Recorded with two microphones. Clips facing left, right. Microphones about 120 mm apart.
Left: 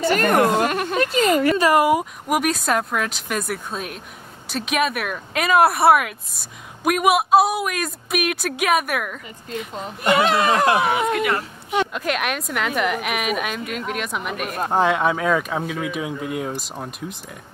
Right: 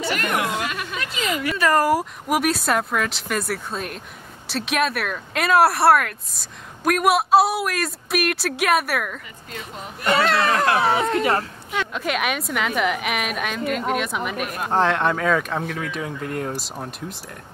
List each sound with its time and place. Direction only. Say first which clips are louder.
0.0 s a woman's voice: left 7 dB; 40° left (ahead or behind)
1.8 s a woman's voice: left 2 dB; centre (ahead or behind)
10.0 s speech: left 2 dB; 15° left (ahead or behind)
11.9 s a woman's voice: even; centre (ahead or behind)